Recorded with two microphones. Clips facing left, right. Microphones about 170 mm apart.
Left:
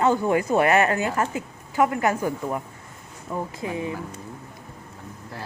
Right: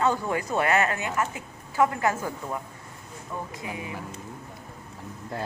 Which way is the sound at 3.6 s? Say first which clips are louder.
Left 7 dB; 30° left (ahead or behind).